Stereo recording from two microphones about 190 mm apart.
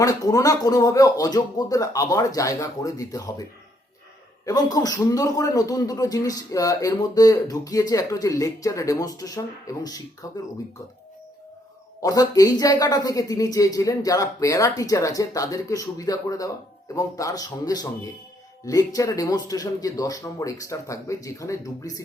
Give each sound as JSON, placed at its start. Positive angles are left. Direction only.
{"t": 0.0, "sound": "speech", "side_deg": 15}
{"t": 4.4, "sound": "a man's voice", "side_deg": 20}
{"t": 12.0, "sound": "a man's voice", "side_deg": 20}